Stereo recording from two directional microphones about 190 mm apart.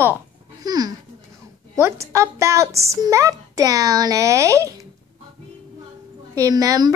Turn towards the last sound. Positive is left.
turn(degrees=-20)  # may be behind; listen again after turning